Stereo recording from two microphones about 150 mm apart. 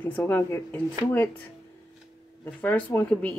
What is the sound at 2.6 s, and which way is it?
Speech, 15° left (ahead or behind).